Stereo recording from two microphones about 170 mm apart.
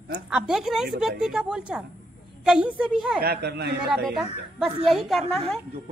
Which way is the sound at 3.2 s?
70° right (ahead or behind).